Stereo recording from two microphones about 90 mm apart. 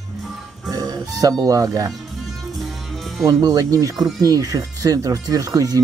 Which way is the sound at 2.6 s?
Centre (ahead or behind).